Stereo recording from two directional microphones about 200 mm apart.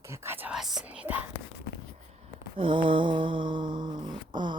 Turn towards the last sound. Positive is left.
turn(degrees=-25)  # may be behind; listen again after turning